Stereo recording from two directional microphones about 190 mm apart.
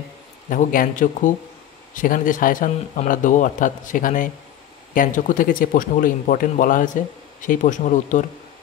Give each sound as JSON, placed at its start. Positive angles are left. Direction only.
{"t": 0.5, "sound": "a man's voice", "side_deg": 45}